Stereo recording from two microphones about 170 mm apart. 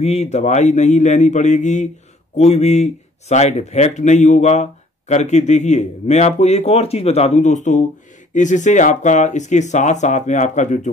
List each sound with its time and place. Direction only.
0.0 s speech: 40° left (ahead or behind)